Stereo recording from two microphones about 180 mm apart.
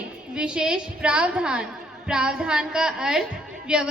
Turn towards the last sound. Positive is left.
turn(degrees=-5)  # may be behind; listen again after turning